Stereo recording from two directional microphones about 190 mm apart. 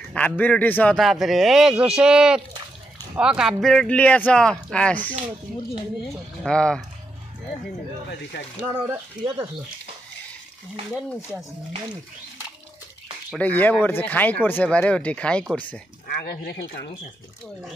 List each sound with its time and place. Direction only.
0.1 s a man's voice: 5° left (ahead or behind)
6.4 s a man's voice: 5° left (ahead or behind)
8.1 s speech: 60° left (ahead or behind)
13.4 s speech: 10° left (ahead or behind)
16.1 s speech: 55° left (ahead or behind)